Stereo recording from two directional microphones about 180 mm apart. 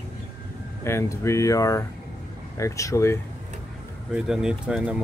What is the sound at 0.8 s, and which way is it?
Speech, 15° left (ahead or behind).